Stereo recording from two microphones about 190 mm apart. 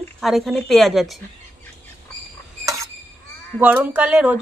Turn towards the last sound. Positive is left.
turn(degrees=-5)  # may be behind; listen again after turning